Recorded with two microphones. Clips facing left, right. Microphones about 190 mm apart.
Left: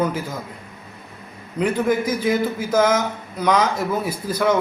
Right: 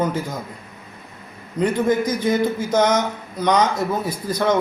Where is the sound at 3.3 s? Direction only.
5° left (ahead or behind).